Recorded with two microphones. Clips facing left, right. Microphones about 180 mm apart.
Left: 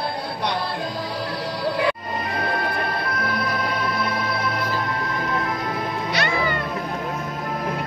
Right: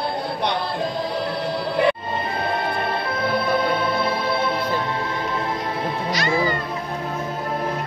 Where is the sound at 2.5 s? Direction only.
25° right (ahead or behind).